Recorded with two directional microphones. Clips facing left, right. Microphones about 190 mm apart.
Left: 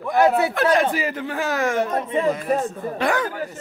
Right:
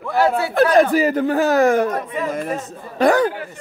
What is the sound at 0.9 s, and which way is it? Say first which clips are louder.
Speech: right 9 dB; 40° right (ahead or behind).